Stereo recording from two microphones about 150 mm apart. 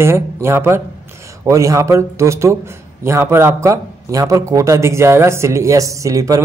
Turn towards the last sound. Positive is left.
turn(degrees=-20)  # may be behind; listen again after turning